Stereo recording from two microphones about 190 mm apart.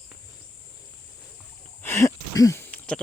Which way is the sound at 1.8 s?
15° left (ahead or behind).